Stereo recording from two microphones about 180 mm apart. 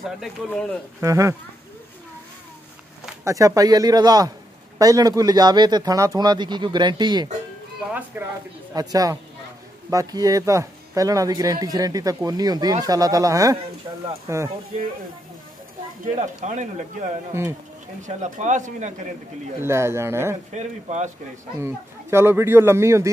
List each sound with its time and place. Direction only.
0.2 s speech: 5° left (ahead or behind)
1.0 s speech: 15° right (ahead or behind)
3.3 s speech: 20° right (ahead or behind)
8.2 s speech: 10° right (ahead or behind)
16.2 s speech: 40° right (ahead or behind)
17.3 s speech: 15° right (ahead or behind)
18.0 s speech: 40° right (ahead or behind)
19.6 s speech: 15° right (ahead or behind)
20.5 s speech: 40° right (ahead or behind)
21.5 s speech: 15° right (ahead or behind)